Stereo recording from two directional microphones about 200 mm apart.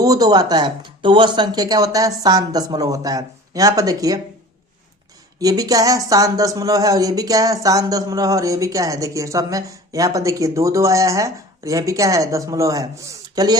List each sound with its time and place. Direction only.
0.0 s speech: 20° right (ahead or behind)
5.4 s speech: 20° right (ahead or behind)